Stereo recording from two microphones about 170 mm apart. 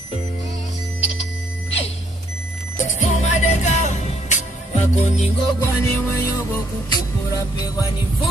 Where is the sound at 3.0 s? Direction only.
45° left (ahead or behind).